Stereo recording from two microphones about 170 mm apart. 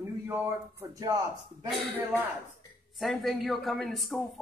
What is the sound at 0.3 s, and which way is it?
Speech, 15° right (ahead or behind).